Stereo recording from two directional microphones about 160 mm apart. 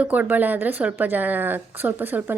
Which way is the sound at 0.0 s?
10° right (ahead or behind).